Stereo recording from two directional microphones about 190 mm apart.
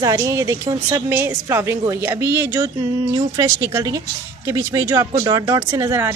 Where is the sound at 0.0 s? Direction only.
15° right (ahead or behind).